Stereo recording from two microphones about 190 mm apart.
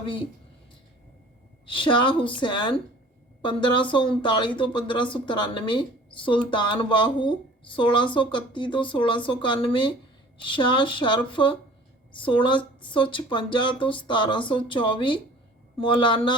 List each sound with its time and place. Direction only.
0.0 s a woman's voice: 25° left (ahead or behind)
1.6 s a woman's voice: 25° left (ahead or behind)